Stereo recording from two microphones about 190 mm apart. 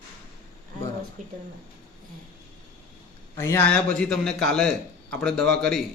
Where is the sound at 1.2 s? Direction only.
45° right (ahead or behind).